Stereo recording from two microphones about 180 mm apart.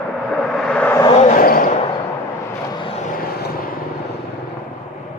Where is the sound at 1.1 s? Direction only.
50° left (ahead or behind).